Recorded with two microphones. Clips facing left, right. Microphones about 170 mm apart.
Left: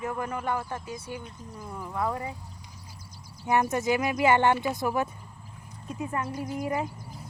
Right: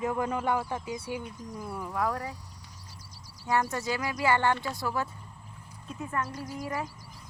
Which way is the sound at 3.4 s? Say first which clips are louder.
Left 4 dB; 20° left (ahead or behind).